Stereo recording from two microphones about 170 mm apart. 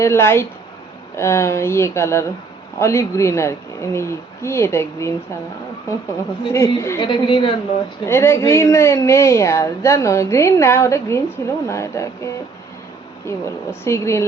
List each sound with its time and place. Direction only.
0.0 s a woman's voice: 15° left (ahead or behind)
6.5 s a woman's voice: 15° left (ahead or behind)
7.0 s a woman's voice: 30° left (ahead or behind)
8.0 s a woman's voice: 15° left (ahead or behind)